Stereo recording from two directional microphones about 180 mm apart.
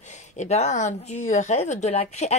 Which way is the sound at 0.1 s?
40° left (ahead or behind).